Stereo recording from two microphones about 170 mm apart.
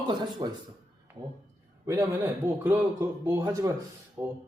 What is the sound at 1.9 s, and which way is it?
A woman's voice, 15° right (ahead or behind).